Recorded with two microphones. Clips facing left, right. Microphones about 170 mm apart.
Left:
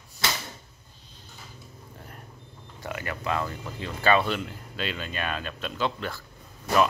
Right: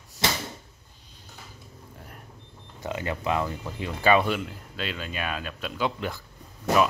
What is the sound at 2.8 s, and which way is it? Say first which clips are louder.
Speech: right 3 dB; 20° right (ahead or behind).